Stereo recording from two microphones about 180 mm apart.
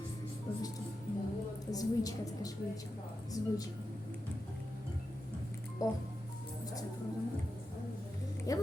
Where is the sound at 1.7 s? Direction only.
20° left (ahead or behind).